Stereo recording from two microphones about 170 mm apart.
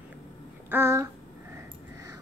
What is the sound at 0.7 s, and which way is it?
Speech, 15° right (ahead or behind).